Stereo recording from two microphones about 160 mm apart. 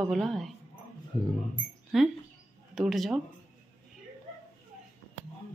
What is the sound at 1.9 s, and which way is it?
Speech, centre (ahead or behind).